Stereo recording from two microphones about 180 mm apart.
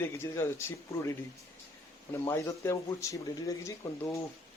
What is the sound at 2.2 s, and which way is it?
Speech, 15° left (ahead or behind).